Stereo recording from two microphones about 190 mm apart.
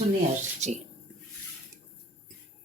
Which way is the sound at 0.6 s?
35° right (ahead or behind).